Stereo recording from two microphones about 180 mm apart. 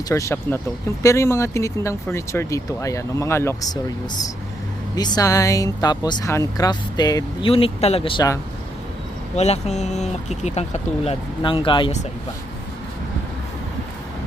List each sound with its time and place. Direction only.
0.1 s speech: 15° left (ahead or behind)
4.9 s speech: 20° left (ahead or behind)
7.5 s speech: 35° left (ahead or behind)
9.3 s speech: 35° left (ahead or behind)